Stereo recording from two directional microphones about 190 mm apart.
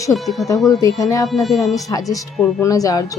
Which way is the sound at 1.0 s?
15° left (ahead or behind).